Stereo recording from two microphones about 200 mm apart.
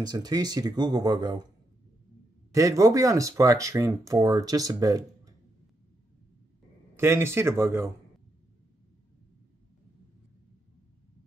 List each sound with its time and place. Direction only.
0.0 s speech: 20° right (ahead or behind)
2.5 s speech: 15° right (ahead or behind)
7.0 s speech: 10° right (ahead or behind)